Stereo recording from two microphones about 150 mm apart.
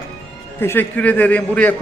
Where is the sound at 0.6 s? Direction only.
15° left (ahead or behind).